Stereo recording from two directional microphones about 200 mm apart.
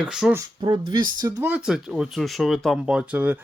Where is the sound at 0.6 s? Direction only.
20° right (ahead or behind).